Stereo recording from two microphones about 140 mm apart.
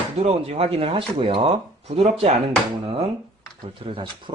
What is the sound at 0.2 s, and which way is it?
Speech, 50° right (ahead or behind).